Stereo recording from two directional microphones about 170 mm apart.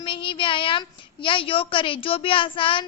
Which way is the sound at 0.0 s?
30° left (ahead or behind).